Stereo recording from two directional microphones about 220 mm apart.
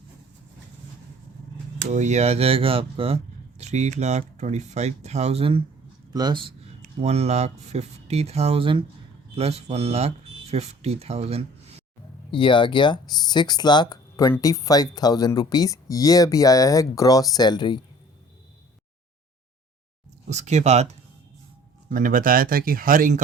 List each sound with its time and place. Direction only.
1.9 s speech: 30° right (ahead or behind)
12.3 s speech: 20° left (ahead or behind)
20.2 s speech: 30° right (ahead or behind)
21.8 s speech: 40° right (ahead or behind)